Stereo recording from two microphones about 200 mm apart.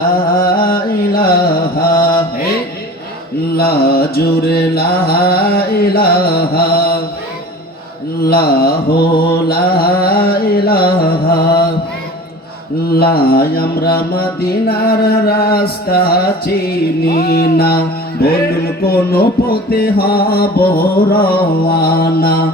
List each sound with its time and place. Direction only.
0.6 s carnatic music: 45° left (ahead or behind)
1.8 s mantra: 50° left (ahead or behind)
3.6 s music: 50° left (ahead or behind)
8.2 s music: 50° left (ahead or behind)
13.0 s music: 50° left (ahead or behind)